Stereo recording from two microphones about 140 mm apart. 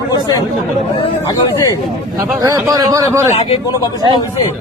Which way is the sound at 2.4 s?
25° right (ahead or behind).